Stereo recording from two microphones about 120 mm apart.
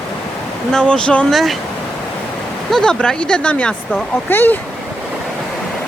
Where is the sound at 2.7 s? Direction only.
5° left (ahead or behind).